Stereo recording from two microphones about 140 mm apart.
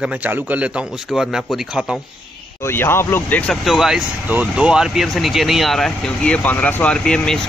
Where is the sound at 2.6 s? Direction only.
15° left (ahead or behind).